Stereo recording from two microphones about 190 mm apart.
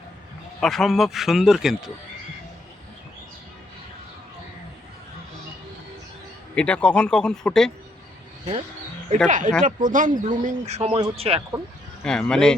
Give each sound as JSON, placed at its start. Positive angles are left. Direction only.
{"t": 0.6, "sound": "speech", "side_deg": 0}
{"t": 6.6, "sound": "speech", "side_deg": 5}
{"t": 9.2, "sound": "speech", "side_deg": -40}
{"t": 12.0, "sound": "speech", "side_deg": 5}